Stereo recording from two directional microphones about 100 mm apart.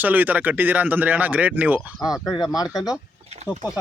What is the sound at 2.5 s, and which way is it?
Speech, 40° left (ahead or behind).